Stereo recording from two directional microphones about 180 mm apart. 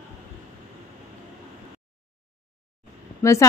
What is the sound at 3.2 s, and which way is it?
Speech, 15° left (ahead or behind).